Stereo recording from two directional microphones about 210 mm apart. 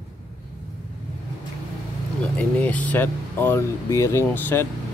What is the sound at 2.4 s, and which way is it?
Speech, 5° left (ahead or behind).